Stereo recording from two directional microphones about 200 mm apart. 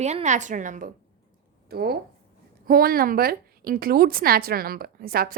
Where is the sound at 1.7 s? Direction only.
50° right (ahead or behind).